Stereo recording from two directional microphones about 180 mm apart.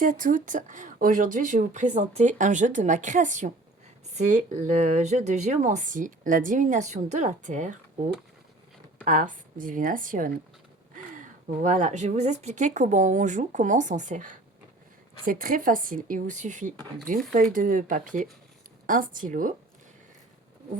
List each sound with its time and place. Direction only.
0.0 s speech: 50° right (ahead or behind)
9.0 s speech: 45° right (ahead or behind)
11.6 s speech: 45° right (ahead or behind)